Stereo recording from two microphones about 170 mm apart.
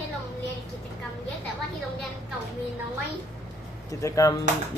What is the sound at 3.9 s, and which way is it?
Speech, 20° left (ahead or behind).